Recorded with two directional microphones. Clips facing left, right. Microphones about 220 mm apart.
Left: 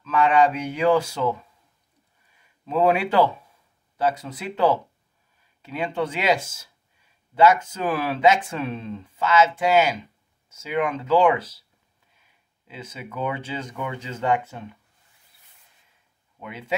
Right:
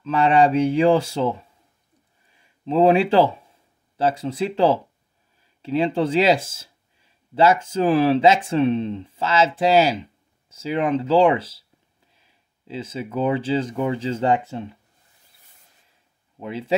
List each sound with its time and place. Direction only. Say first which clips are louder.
0.0 s speech: right 2 dB; 30° right (ahead or behind)
16.3 s speech: right 8 dB; 30° right (ahead or behind)